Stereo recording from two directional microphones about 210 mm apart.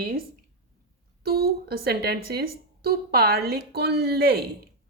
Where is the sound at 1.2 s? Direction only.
50° right (ahead or behind).